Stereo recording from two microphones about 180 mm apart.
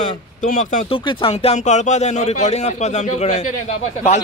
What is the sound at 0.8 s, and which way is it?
Speech, 30° left (ahead or behind).